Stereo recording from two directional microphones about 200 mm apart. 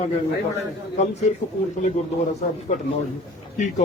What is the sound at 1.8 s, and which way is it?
Speech, 35° left (ahead or behind).